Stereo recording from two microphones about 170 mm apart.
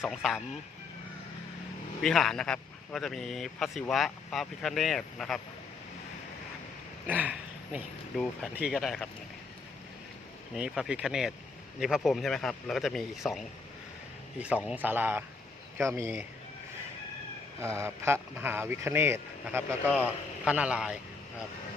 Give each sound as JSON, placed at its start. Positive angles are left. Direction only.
{"t": 0.0, "sound": "speech", "side_deg": 0}
{"t": 2.0, "sound": "speech", "side_deg": 5}
{"t": 7.1, "sound": "speech", "side_deg": -10}
{"t": 10.5, "sound": "speech", "side_deg": -5}
{"t": 17.6, "sound": "speech", "side_deg": -15}
{"t": 19.9, "sound": "a man's voice", "side_deg": 10}
{"t": 20.4, "sound": "speech", "side_deg": -5}